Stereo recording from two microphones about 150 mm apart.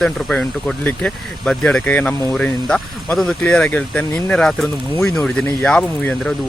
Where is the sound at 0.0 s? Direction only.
5° left (ahead or behind).